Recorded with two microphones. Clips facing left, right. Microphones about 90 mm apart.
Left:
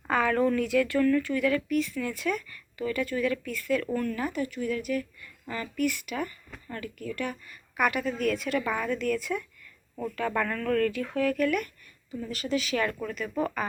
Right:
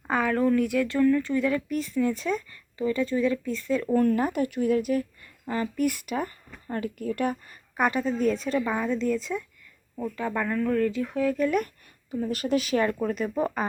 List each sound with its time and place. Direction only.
0.1 s a sound: 10° right (ahead or behind)
0.3 s speech: 5° right (ahead or behind)
0.6 s speech: 15° right (ahead or behind)
1.7 s speech: 35° right (ahead or behind)
2.0 s speech: 25° right (ahead or behind)
3.9 s speech: 40° right (ahead or behind)
7.8 s speech: 30° right (ahead or behind)
12.1 s speech: 45° right (ahead or behind)
12.7 s speech: 30° right (ahead or behind)